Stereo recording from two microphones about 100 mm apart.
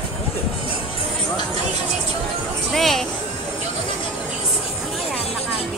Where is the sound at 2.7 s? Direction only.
Centre (ahead or behind).